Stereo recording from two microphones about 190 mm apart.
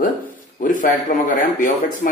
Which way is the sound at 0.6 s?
45° left (ahead or behind).